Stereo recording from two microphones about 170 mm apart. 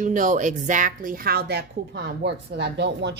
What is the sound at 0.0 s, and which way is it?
A woman's voice, 50° right (ahead or behind).